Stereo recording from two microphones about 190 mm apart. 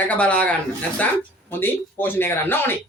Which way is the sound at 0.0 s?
5° left (ahead or behind).